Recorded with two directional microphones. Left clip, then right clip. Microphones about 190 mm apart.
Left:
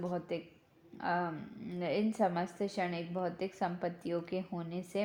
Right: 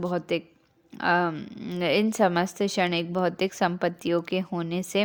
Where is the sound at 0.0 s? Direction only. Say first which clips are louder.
Right 10 dB; 45° right (ahead or behind).